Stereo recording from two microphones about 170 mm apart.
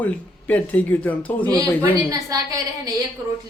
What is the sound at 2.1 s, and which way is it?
Speech, 20° right (ahead or behind).